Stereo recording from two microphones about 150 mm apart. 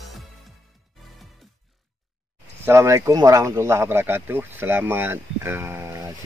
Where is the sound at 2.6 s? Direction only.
20° right (ahead or behind).